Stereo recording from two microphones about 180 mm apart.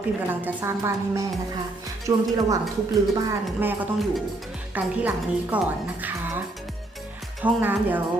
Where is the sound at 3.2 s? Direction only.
10° right (ahead or behind).